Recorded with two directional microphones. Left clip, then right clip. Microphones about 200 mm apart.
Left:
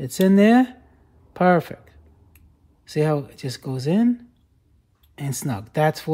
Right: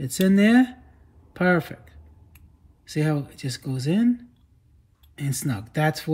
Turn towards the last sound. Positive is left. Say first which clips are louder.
# left 4 dB
turn(degrees=45)  # may be behind; listen again after turning